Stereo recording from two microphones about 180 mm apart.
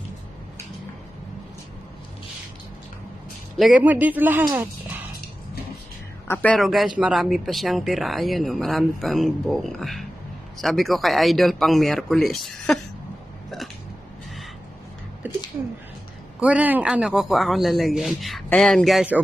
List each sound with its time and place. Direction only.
3.5 s a man's voice: 5° right (ahead or behind)
6.2 s speech: 10° left (ahead or behind)
15.2 s a sound: 10° right (ahead or behind)
16.3 s speech: 5° right (ahead or behind)